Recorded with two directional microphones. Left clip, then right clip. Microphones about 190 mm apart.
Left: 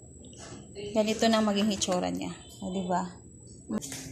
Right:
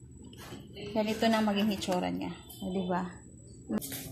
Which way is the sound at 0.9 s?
20° left (ahead or behind).